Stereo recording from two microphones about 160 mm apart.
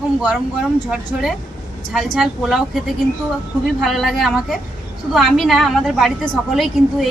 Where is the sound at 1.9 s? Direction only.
Centre (ahead or behind).